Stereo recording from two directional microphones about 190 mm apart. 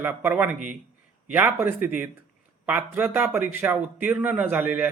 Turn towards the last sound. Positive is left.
turn(degrees=-10)  # may be behind; listen again after turning